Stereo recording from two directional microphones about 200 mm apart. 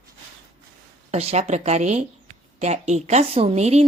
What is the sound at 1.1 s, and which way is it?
A woman's voice, 30° right (ahead or behind).